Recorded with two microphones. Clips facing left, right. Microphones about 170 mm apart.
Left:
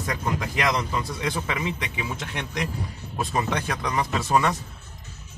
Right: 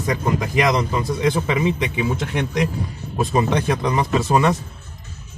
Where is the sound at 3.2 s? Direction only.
20° right (ahead or behind).